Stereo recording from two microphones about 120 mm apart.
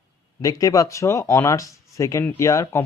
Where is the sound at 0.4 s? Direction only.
30° left (ahead or behind).